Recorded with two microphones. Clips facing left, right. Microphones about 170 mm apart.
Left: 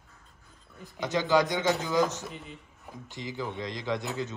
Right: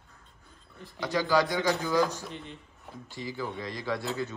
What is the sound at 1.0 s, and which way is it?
Speech, 20° left (ahead or behind).